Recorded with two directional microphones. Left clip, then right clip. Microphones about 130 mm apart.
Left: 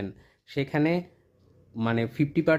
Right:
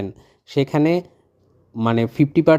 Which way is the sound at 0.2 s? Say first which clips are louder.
Right 13 dB; 45° right (ahead or behind).